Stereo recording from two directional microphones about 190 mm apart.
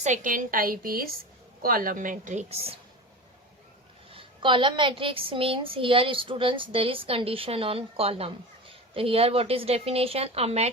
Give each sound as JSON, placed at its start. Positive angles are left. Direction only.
{"t": 0.0, "sound": "a woman's voice", "side_deg": -40}
{"t": 4.1, "sound": "a woman's voice", "side_deg": -25}